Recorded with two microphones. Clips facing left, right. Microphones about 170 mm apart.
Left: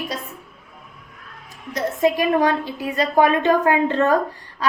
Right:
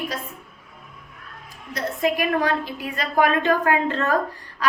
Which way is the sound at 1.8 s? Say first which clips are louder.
Left 4 dB; 20° left (ahead or behind).